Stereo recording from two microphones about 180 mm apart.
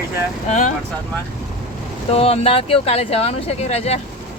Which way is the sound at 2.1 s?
35° left (ahead or behind).